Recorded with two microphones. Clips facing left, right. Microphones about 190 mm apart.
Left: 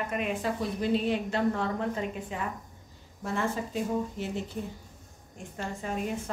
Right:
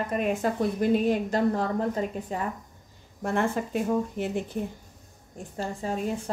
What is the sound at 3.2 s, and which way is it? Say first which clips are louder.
Speech: right 4 dB; 55° right (ahead or behind).